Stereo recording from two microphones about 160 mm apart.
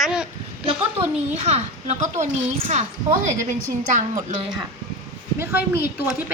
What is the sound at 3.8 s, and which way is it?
Speech, 50° right (ahead or behind).